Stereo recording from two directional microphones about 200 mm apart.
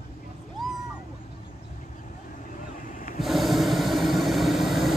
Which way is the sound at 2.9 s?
45° left (ahead or behind).